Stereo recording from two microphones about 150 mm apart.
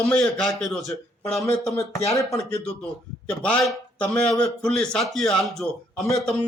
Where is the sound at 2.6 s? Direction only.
5° left (ahead or behind).